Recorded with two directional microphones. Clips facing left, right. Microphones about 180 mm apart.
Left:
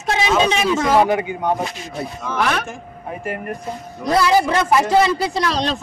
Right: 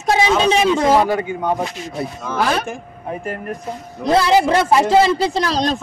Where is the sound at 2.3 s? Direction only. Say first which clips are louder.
Right 2 dB; 30° right (ahead or behind).